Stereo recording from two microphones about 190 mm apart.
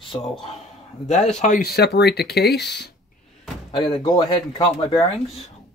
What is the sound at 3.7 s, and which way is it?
Speech, 30° left (ahead or behind).